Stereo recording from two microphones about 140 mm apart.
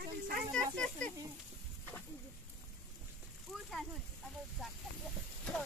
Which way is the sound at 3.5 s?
Centre (ahead or behind).